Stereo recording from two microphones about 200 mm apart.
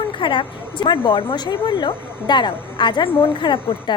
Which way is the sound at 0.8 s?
25° left (ahead or behind).